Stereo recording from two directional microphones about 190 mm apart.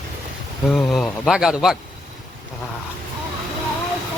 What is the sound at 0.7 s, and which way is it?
A man's voice, centre (ahead or behind).